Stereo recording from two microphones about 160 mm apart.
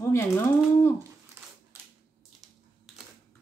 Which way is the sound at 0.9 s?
15° right (ahead or behind).